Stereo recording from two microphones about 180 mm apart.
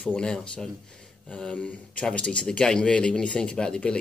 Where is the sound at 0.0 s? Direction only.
5° left (ahead or behind).